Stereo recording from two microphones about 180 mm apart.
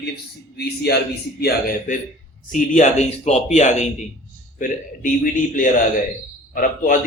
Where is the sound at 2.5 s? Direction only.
45° left (ahead or behind).